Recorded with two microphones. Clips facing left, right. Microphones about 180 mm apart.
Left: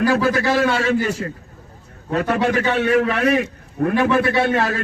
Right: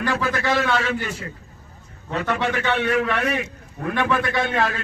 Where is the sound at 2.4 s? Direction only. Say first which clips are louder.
Left 4 dB; 40° left (ahead or behind).